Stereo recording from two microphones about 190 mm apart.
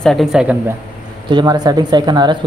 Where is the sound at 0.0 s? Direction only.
Centre (ahead or behind).